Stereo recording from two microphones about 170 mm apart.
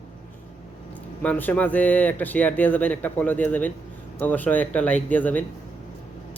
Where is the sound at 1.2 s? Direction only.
10° left (ahead or behind).